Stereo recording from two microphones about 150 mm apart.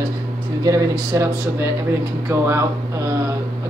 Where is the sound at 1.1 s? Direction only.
20° right (ahead or behind).